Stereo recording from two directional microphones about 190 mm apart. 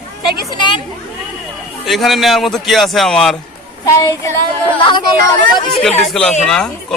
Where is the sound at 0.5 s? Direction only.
25° left (ahead or behind).